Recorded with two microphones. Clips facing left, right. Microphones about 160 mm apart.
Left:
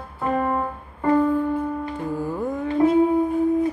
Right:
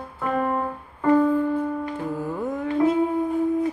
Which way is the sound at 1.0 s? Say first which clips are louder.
Right 1 dB; centre (ahead or behind).